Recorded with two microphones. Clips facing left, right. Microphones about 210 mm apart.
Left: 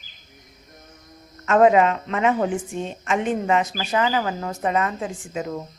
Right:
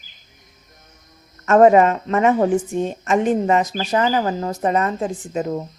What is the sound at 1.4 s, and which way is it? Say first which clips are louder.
A woman's voice: right 4 dB; 45° right (ahead or behind).